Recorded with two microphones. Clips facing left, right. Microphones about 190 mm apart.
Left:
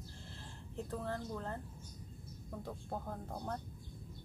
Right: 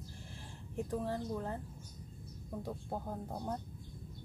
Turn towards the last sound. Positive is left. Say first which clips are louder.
# right 2 dB
turn(degrees=-15)  # may be behind; listen again after turning